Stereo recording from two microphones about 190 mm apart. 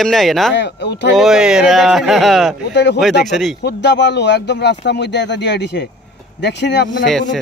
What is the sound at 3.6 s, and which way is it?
Speech, 65° left (ahead or behind).